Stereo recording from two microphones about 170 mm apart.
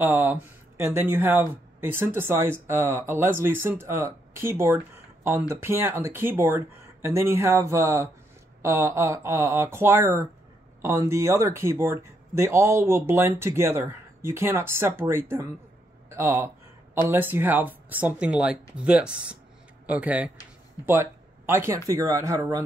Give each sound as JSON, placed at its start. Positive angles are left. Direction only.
{"t": 0.0, "sound": "speech", "side_deg": -10}
{"t": 16.1, "sound": "a sound", "side_deg": -15}
{"t": 17.1, "sound": "speech", "side_deg": -10}